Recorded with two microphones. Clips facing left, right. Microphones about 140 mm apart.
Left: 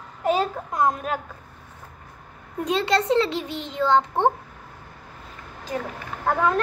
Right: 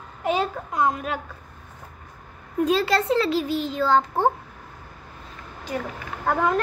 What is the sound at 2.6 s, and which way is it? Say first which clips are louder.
A child's voice: right 2 dB; 20° left (ahead or behind).